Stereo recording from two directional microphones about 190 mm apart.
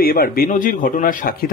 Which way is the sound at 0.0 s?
50° left (ahead or behind).